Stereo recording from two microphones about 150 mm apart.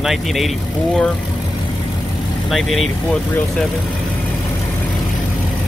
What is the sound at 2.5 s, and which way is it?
Speech, centre (ahead or behind).